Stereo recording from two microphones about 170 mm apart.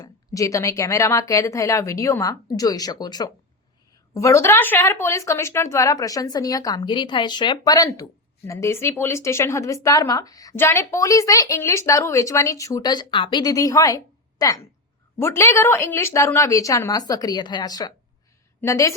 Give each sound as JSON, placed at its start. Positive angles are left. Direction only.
{"t": 0.0, "sound": "a woman's voice", "side_deg": 20}